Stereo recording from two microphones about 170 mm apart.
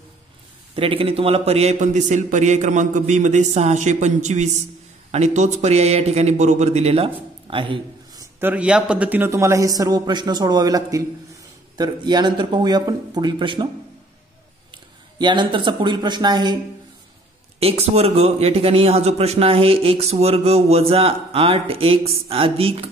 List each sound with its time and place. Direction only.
0.7 s a man's voice: 35° right (ahead or behind)
8.4 s a man's voice: 10° right (ahead or behind); by 13.7 s 30° right (ahead or behind)
15.1 s a man's voice: 25° right (ahead or behind)
17.6 s a man's voice: 35° right (ahead or behind)